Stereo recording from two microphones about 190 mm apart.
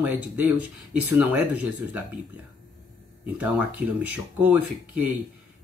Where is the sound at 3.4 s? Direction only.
10° right (ahead or behind).